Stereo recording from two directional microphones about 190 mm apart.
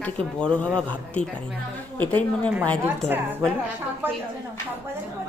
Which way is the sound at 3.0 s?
10° right (ahead or behind).